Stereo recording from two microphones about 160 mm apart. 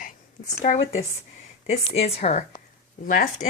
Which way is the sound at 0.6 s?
45° left (ahead or behind).